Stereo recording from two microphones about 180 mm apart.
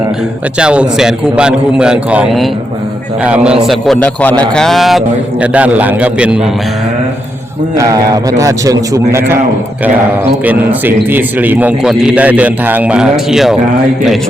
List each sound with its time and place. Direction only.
0.6 s a man's voice: 5° right (ahead or behind)
7.8 s a man's voice: 20° right (ahead or behind)
10.4 s a man's voice: 10° right (ahead or behind)